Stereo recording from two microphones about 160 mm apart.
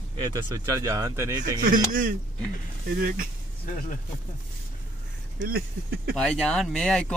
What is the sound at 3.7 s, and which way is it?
Speech, 55° left (ahead or behind).